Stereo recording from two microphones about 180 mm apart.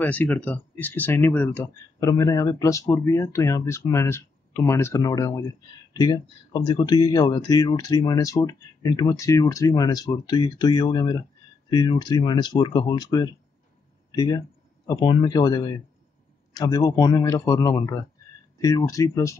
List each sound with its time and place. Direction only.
0.0 s speech: 10° left (ahead or behind)